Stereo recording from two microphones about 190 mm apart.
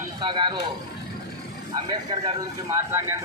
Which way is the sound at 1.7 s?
25° right (ahead or behind).